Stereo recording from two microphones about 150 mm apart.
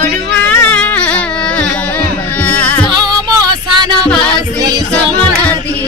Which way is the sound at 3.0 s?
30° right (ahead or behind).